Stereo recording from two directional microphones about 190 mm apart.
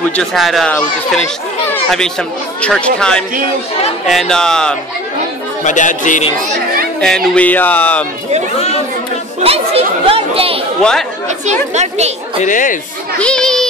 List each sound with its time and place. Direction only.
0.1 s a child's voice: 5° left (ahead or behind)
5.6 s speech: 40° left (ahead or behind)
7.0 s speech: 5° left (ahead or behind)
9.4 s chatter: 30° right (ahead or behind)
10.8 s a child's voice: 5° left (ahead or behind)
11.7 s a woman's voice: 35° right (ahead or behind)
12.4 s speech: 45° left (ahead or behind)
13.2 s a child's voice: 5° left (ahead or behind)